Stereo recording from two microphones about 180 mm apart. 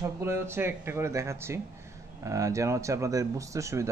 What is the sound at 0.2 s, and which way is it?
Speech, 15° right (ahead or behind).